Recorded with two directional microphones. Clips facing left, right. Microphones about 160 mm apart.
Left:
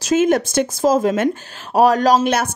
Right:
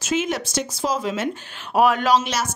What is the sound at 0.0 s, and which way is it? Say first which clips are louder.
A woman's voice: left 8 dB; 45° left (ahead or behind).